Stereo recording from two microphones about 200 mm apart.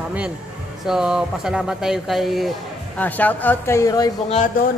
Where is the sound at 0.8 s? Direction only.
5° right (ahead or behind); by 4.1 s 15° left (ahead or behind).